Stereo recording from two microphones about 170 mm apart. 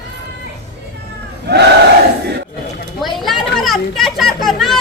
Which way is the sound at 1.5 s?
70° right (ahead or behind).